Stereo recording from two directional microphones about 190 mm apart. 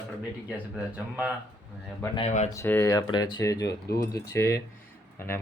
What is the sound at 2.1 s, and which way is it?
Speech, 35° left (ahead or behind).